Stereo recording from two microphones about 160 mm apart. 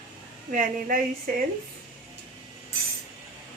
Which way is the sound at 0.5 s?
60° right (ahead or behind).